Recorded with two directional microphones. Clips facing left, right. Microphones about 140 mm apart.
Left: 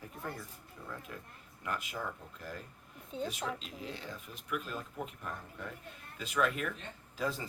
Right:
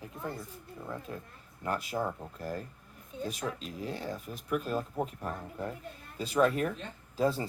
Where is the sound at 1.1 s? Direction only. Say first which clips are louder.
Right 5 dB; 30° right (ahead or behind).